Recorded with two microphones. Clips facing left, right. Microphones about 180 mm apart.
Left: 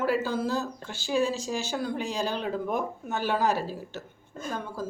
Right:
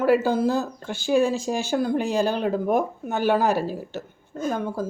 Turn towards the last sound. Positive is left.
turn(degrees=-55)  # may be behind; listen again after turning